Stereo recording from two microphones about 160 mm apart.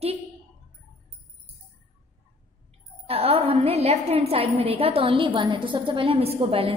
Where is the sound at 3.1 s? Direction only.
40° right (ahead or behind).